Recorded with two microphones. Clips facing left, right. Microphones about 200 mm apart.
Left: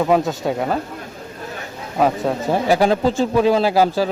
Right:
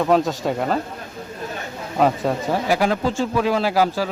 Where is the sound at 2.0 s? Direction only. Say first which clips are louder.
Left 1 dB; centre (ahead or behind).